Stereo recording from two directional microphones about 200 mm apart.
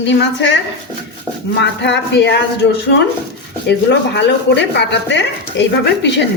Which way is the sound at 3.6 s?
60° left (ahead or behind).